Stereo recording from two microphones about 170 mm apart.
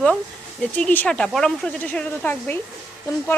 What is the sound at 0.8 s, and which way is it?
Speech, 5° left (ahead or behind).